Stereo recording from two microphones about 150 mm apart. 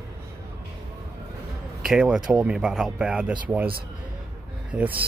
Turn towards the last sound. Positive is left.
turn(degrees=-10)  # may be behind; listen again after turning